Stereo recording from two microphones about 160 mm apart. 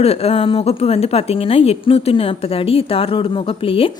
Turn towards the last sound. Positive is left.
turn(degrees=35)  # may be behind; listen again after turning